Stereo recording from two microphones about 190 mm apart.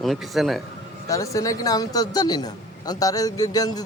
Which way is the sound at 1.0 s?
15° left (ahead or behind).